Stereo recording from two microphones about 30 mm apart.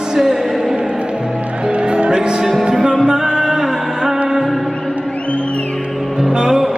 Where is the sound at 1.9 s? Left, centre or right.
Right.